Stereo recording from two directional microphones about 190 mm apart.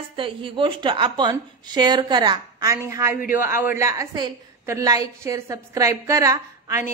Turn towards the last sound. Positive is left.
turn(degrees=-15)  # may be behind; listen again after turning